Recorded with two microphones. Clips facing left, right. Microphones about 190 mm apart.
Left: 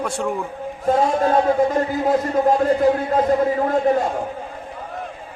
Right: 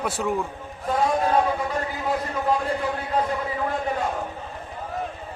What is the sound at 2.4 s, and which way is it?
A man's voice, 45° left (ahead or behind).